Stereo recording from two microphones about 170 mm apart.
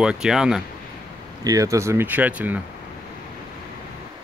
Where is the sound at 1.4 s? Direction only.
20° right (ahead or behind).